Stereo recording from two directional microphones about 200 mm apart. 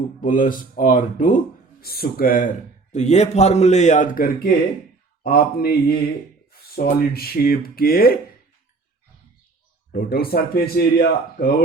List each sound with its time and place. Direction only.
0.2 s a man's voice: 40° left (ahead or behind)
2.9 s a man's voice: 35° left (ahead or behind)
9.9 s speech: 50° left (ahead or behind)